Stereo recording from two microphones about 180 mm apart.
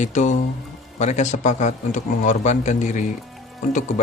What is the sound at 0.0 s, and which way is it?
Speech, 40° left (ahead or behind).